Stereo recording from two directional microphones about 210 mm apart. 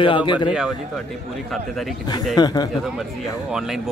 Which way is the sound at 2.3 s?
20° left (ahead or behind).